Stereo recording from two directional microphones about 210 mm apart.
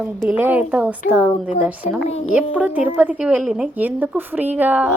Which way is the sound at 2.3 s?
5° right (ahead or behind).